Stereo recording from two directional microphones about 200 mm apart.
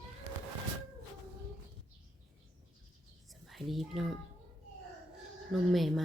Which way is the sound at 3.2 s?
Centre (ahead or behind).